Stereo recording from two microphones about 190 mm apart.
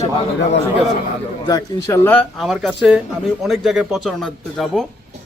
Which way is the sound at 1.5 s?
20° left (ahead or behind).